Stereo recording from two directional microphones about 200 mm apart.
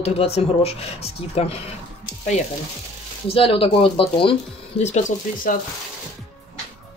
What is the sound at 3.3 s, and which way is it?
Speech, 25° left (ahead or behind).